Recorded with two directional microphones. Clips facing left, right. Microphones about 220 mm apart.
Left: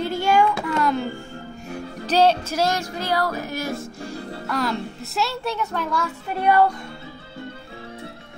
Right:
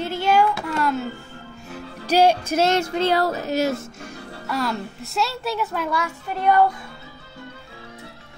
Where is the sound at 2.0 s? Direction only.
10° right (ahead or behind).